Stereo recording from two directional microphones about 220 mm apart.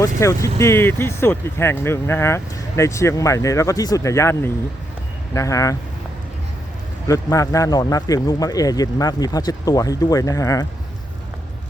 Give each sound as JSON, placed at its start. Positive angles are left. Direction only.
{"t": 0.0, "sound": "speech", "side_deg": 15}
{"t": 7.1, "sound": "speech", "side_deg": 15}